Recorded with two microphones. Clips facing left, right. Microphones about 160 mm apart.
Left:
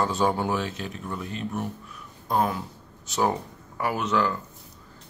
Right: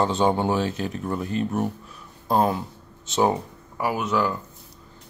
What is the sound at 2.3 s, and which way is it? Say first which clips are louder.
Speech: right 4 dB; 30° right (ahead or behind).